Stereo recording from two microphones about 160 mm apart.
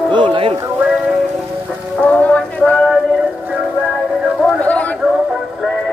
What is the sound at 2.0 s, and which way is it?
Music, 10° left (ahead or behind).